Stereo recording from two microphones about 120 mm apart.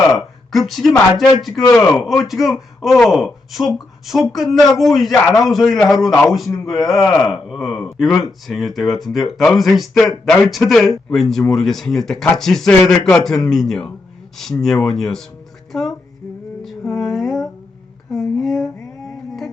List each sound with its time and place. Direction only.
0.1 s a man's voice: centre (ahead or behind)
15.7 s music: centre (ahead or behind)
18.1 s a sound: centre (ahead or behind)